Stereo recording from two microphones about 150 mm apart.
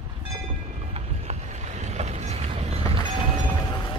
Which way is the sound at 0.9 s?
45° right (ahead or behind).